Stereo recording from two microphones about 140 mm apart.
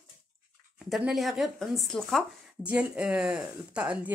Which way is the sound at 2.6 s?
10° right (ahead or behind).